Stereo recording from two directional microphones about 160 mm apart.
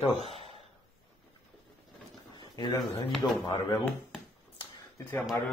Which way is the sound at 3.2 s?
15° left (ahead or behind).